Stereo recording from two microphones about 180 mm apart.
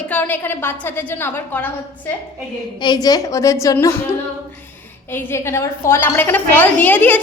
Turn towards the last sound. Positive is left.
turn(degrees=10)  # may be behind; listen again after turning